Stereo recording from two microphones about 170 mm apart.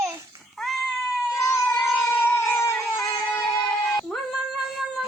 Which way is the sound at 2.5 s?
15° left (ahead or behind).